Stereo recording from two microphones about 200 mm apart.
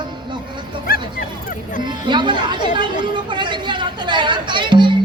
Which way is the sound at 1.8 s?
25° right (ahead or behind).